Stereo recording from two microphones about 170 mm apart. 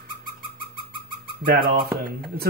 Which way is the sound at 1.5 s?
60° right (ahead or behind).